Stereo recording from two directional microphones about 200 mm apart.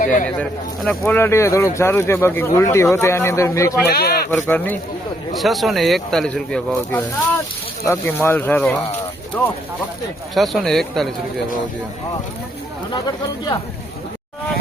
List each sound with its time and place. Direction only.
0.0 s speech: 40° left (ahead or behind)
0.3 s speech: 5° left (ahead or behind)
3.8 s speech: 50° left (ahead or behind)
4.3 s speech: 10° left (ahead or behind)
12.9 s speech: 20° left (ahead or behind)